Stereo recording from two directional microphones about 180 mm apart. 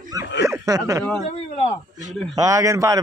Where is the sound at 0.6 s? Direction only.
20° right (ahead or behind).